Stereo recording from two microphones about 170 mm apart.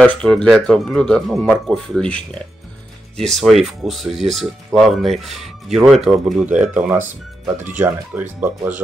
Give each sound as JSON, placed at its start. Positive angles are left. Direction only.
{"t": 0.0, "sound": "speech", "side_deg": 5}